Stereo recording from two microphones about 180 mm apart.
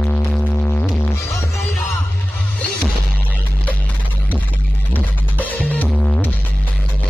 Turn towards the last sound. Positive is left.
turn(degrees=5)  # may be behind; listen again after turning